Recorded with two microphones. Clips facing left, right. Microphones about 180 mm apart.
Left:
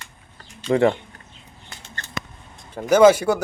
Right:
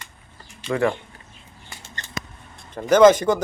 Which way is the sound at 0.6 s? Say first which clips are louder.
Left 4 dB; 25° left (ahead or behind).